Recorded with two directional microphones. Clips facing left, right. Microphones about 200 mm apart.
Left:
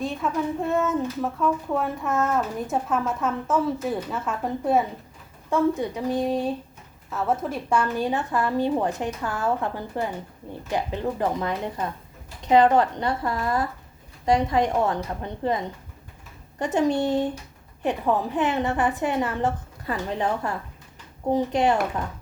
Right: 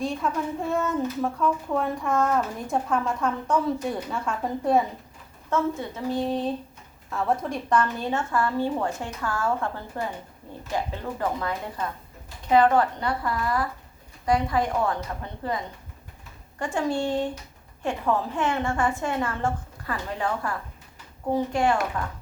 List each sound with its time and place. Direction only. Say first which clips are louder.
0.0 s a woman's voice: left 1 dB; centre (ahead or behind)
5.5 s a woman's voice: left 4 dB; 15° left (ahead or behind)